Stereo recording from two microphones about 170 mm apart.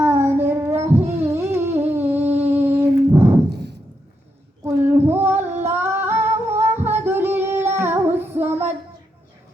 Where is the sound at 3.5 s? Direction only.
80° right.